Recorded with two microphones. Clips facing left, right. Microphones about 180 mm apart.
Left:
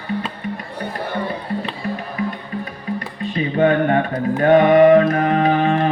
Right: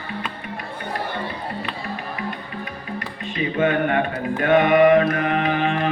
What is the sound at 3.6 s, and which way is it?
Mantra, 35° left (ahead or behind).